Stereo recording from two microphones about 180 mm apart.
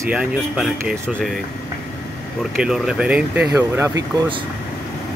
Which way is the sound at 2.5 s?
5° right (ahead or behind).